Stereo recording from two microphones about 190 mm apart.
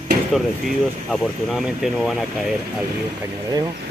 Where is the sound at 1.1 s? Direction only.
Centre (ahead or behind).